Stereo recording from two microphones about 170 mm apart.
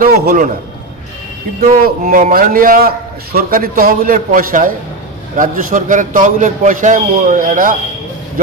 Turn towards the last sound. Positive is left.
turn(degrees=-50)  # may be behind; listen again after turning